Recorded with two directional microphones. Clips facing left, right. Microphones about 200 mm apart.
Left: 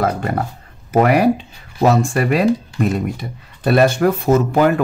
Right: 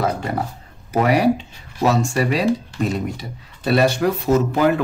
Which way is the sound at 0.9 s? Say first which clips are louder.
Left 3 dB; 55° left (ahead or behind).